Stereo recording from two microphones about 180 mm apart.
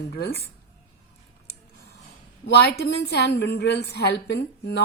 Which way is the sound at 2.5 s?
60° left (ahead or behind).